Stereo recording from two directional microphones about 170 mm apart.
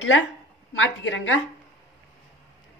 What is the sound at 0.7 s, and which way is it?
Speech, 90° left.